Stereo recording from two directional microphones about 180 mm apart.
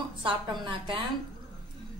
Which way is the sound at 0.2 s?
25° right (ahead or behind).